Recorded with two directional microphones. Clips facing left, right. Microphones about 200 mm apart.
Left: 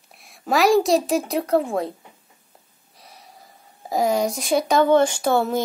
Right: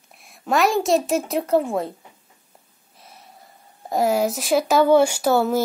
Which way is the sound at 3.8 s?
5° right (ahead or behind).